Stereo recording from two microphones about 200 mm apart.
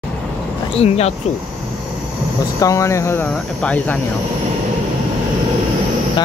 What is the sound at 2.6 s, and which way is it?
Speech, 15° left (ahead or behind).